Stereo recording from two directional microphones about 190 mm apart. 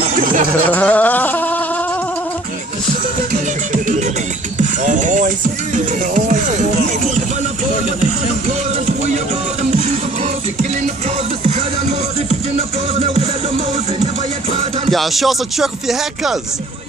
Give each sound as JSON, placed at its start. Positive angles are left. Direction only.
{"t": 0.0, "sound": "a sound", "side_deg": -40}
{"t": 0.7, "sound": "a sound", "side_deg": 10}
{"t": 4.6, "sound": "music", "side_deg": -40}
{"t": 9.1, "sound": "music", "side_deg": -35}
{"t": 12.3, "sound": "music", "side_deg": -35}
{"t": 14.9, "sound": "speech", "side_deg": 0}